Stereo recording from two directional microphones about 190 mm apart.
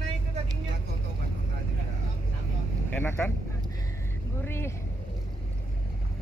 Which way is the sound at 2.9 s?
10° left (ahead or behind).